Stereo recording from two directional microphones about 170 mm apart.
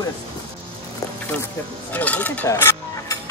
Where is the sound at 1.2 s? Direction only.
10° left (ahead or behind).